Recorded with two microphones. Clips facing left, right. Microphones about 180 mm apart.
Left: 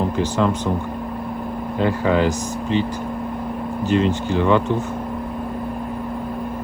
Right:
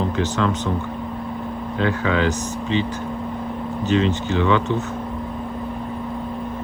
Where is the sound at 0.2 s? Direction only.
10° left (ahead or behind).